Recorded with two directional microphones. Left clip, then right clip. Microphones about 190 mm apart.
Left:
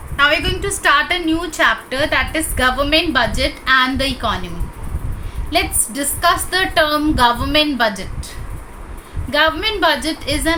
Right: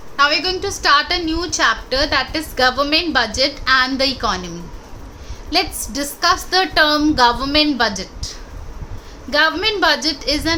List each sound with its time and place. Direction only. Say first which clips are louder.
0.4 s a woman's voice: left 1 dB; 25° right (ahead or behind)
5.5 s a woman's voice: left 1 dB; 25° right (ahead or behind)
9.3 s a woman's voice: even; 25° right (ahead or behind)